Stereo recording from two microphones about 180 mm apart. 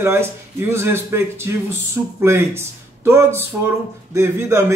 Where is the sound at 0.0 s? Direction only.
15° right (ahead or behind).